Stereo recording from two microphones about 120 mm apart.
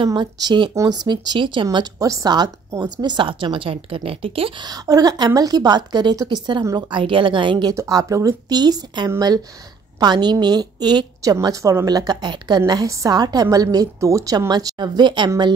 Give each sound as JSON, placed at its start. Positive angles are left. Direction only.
{"t": 0.0, "sound": "speech", "side_deg": -40}
{"t": 4.6, "sound": "a woman's voice", "side_deg": -30}
{"t": 7.7, "sound": "a woman's voice", "side_deg": -25}